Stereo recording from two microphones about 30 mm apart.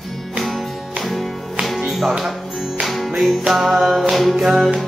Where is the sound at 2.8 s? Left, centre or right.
Centre.